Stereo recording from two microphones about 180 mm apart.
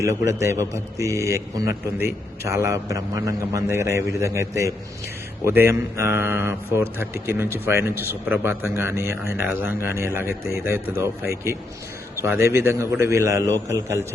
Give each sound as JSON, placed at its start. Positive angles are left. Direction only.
{"t": 0.0, "sound": "a man's voice", "side_deg": -15}